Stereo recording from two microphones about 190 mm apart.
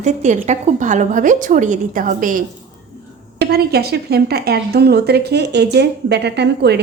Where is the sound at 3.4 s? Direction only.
55° right (ahead or behind).